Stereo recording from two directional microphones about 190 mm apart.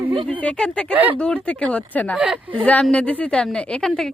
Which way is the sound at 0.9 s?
10° right (ahead or behind).